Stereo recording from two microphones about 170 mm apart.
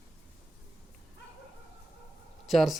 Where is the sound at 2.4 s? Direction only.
Centre (ahead or behind).